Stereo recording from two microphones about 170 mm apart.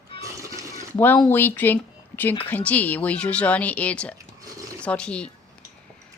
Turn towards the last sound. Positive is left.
turn(degrees=5)  # may be behind; listen again after turning